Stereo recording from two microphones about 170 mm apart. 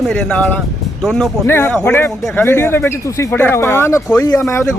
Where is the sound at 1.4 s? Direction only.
15° left (ahead or behind).